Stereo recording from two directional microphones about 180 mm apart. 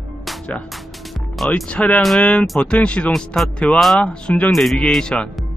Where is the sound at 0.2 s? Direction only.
Centre (ahead or behind).